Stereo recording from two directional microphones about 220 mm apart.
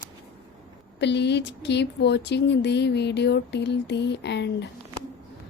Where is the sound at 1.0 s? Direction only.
50° left (ahead or behind).